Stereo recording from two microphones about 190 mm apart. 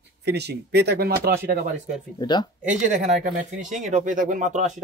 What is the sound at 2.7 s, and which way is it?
Speech, 40° right (ahead or behind).